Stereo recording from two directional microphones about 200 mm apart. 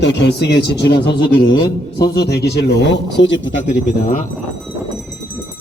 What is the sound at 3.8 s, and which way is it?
Speech, 40° left (ahead or behind).